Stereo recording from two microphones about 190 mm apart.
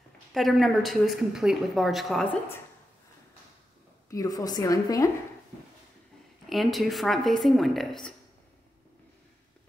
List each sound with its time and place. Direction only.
0.3 s speech: centre (ahead or behind)
4.1 s a woman's voice: 20° left (ahead or behind)
6.5 s speech: centre (ahead or behind)